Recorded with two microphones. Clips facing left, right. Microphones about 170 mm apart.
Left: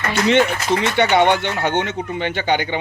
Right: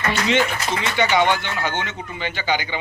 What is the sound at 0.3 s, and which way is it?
Speech, 60° left (ahead or behind).